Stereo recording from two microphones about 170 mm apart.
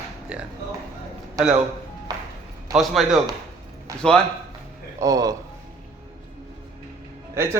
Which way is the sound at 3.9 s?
20° right (ahead or behind).